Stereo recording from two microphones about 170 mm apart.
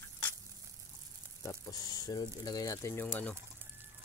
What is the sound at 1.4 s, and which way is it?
Speech, 20° left (ahead or behind).